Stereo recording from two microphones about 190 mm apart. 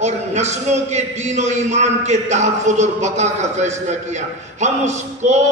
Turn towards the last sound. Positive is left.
turn(degrees=-40)  # may be behind; listen again after turning